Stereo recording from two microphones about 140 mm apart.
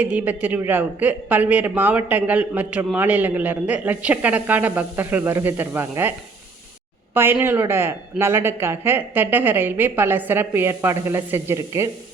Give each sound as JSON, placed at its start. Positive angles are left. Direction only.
{"t": 0.0, "sound": "speech", "side_deg": -10}